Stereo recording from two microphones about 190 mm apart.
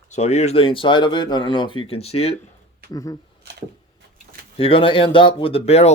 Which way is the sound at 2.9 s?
20° left (ahead or behind).